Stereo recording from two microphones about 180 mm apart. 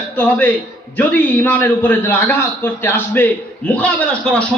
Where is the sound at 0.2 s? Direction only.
10° left (ahead or behind).